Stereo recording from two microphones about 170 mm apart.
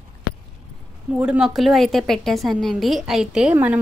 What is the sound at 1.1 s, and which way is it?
A woman's voice, 5° right (ahead or behind).